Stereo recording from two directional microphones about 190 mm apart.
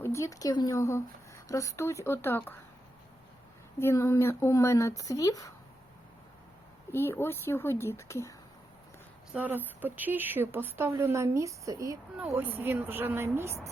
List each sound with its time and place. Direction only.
0.0 s speech: 15° left (ahead or behind)
3.8 s speech: 15° left (ahead or behind)
6.9 s speech: 10° left (ahead or behind)
9.3 s speech: 10° right (ahead or behind)